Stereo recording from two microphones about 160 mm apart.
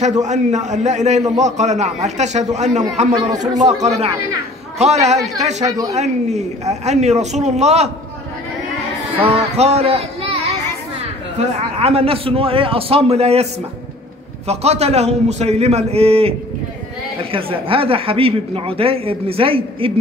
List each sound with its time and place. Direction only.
0.0 s a man's voice: 45° right (ahead or behind)
9.2 s a man's voice: 40° right (ahead or behind)
14.5 s a man's voice: 40° right (ahead or behind)